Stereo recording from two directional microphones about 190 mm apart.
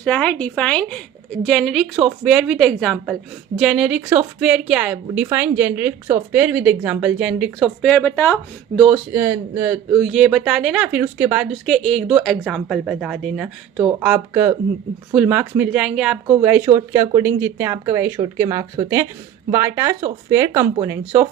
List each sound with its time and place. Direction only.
0.0 s a woman's voice: 5° left (ahead or behind)
7.8 s speech: 5° left (ahead or behind)
9.1 s a woman's voice: 15° right (ahead or behind)
10.0 s a woman's voice: centre (ahead or behind)